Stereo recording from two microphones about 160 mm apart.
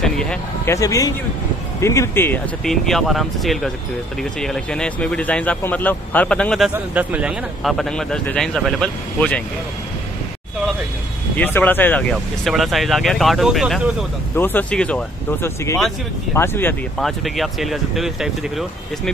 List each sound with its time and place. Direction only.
0.0 s vehicle: 5° left (ahead or behind)
0.7 s speech: 20° left (ahead or behind)
2.6 s speech: centre (ahead or behind)
6.7 s speech: 10° right (ahead or behind); by 9.4 s 5° left (ahead or behind)
11.3 s speech: 10° left (ahead or behind)
12.4 s speech: centre (ahead or behind)
14.3 s speech: 10° left (ahead or behind)
17.0 s speech: centre (ahead or behind)